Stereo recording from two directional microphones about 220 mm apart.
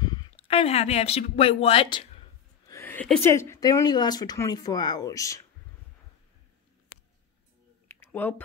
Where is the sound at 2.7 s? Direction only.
10° left (ahead or behind).